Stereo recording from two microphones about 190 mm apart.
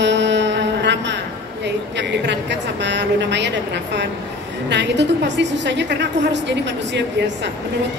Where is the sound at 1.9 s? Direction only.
65° right (ahead or behind).